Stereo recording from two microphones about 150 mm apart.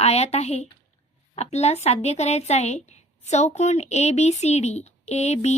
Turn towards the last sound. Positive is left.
turn(degrees=45)  # may be behind; listen again after turning